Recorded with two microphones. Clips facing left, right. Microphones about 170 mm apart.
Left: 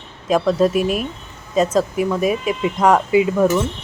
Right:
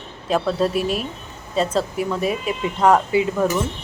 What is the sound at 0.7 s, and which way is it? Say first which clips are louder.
Speech: left 3 dB; 35° right (ahead or behind).